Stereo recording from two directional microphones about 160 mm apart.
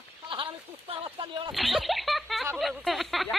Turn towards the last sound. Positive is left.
turn(degrees=0)  # may be behind; listen again after turning